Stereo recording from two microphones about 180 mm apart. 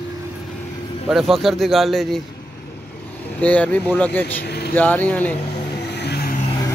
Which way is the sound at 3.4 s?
10° left (ahead or behind).